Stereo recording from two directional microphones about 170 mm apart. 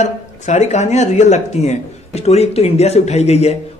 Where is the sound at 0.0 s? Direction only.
40° left (ahead or behind).